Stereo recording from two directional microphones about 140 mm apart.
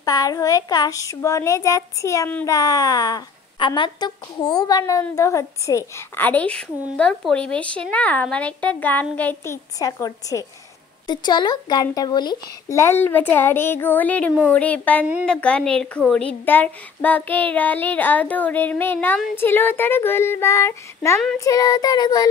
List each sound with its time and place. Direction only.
0.0 s a woman's voice: 25° left (ahead or behind)